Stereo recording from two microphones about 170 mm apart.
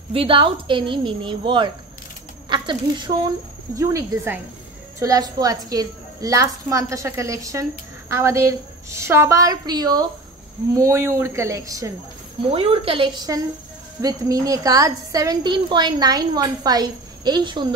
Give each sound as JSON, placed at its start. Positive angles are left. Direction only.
{"t": 0.1, "sound": "a woman's voice", "side_deg": -30}
{"t": 12.4, "sound": "a woman's voice", "side_deg": -35}